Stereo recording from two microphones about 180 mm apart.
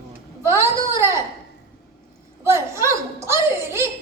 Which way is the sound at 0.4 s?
15° right (ahead or behind).